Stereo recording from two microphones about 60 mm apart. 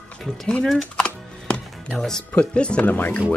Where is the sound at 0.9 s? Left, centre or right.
Centre.